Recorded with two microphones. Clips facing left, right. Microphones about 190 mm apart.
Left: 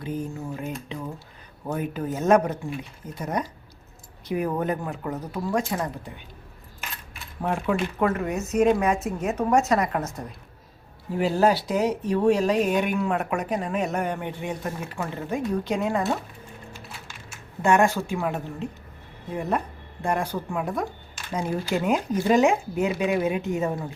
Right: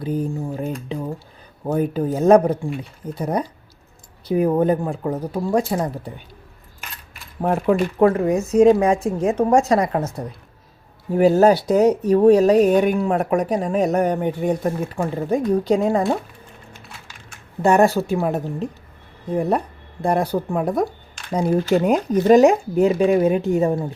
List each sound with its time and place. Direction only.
0.0 s speech: 35° right (ahead or behind)
0.9 s a sound: 35° right (ahead or behind)
1.6 s speech: 35° right (ahead or behind)
7.4 s speech: 40° right (ahead or behind)
11.1 s speech: 45° right (ahead or behind)
17.6 s speech: 35° right (ahead or behind)